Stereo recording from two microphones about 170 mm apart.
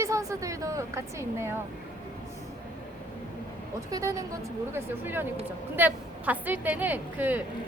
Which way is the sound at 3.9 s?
20° right (ahead or behind).